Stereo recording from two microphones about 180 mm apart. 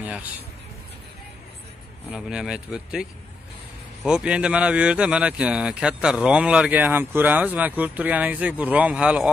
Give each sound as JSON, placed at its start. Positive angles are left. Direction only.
{"t": 0.0, "sound": "speech", "side_deg": -10}
{"t": 2.1, "sound": "speech", "side_deg": -5}